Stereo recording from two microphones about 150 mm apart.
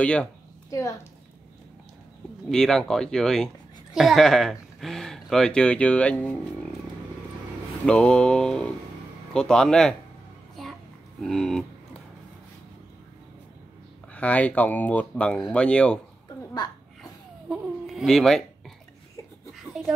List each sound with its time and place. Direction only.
0.0 s speech: 10° left (ahead or behind)
0.7 s a woman's voice: 20° left (ahead or behind)
2.5 s speech: 5° left (ahead or behind)
7.8 s speech: 5° left (ahead or behind)
10.6 s a sound: centre (ahead or behind)
11.1 s speech: centre (ahead or behind)
14.1 s speech: 10° left (ahead or behind)
17.5 s speech: centre (ahead or behind)
19.5 s writing: centre (ahead or behind)